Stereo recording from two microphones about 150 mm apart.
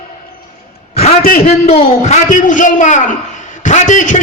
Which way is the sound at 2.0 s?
55° left (ahead or behind).